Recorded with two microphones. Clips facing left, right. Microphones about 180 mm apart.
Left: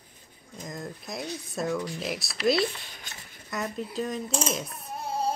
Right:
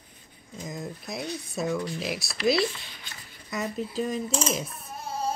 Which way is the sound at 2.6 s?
45° left (ahead or behind).